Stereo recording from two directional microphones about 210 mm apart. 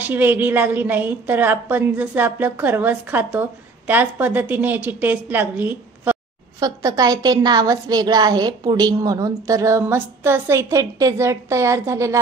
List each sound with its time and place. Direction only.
0.0 s a woman's voice: 10° right (ahead or behind)